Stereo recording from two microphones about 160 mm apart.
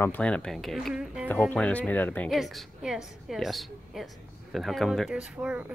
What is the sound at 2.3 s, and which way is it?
Speech, centre (ahead or behind).